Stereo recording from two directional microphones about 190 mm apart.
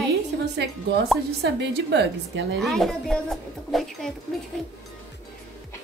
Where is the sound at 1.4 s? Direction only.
60° right (ahead or behind).